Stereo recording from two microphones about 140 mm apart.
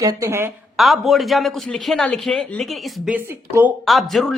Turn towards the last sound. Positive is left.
turn(degrees=0)  # may be behind; listen again after turning